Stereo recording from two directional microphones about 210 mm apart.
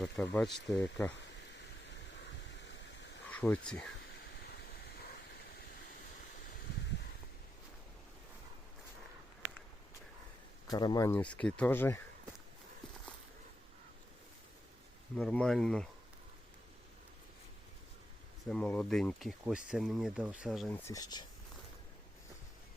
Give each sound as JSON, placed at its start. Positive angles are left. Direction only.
{"t": 0.0, "sound": "speech", "side_deg": 5}
{"t": 0.7, "sound": "speech", "side_deg": 15}
{"t": 3.2, "sound": "speech", "side_deg": 5}
{"t": 9.4, "sound": "a sound", "side_deg": -60}
{"t": 10.7, "sound": "speech", "side_deg": 20}
{"t": 15.1, "sound": "speech", "side_deg": 5}
{"t": 18.4, "sound": "speech", "side_deg": 5}
{"t": 20.8, "sound": "speech", "side_deg": 15}